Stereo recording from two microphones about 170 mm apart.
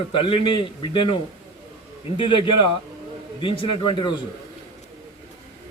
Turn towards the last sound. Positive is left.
turn(degrees=30)  # may be behind; listen again after turning